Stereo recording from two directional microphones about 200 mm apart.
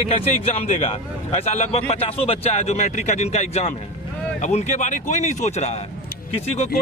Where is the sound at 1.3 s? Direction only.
35° left (ahead or behind).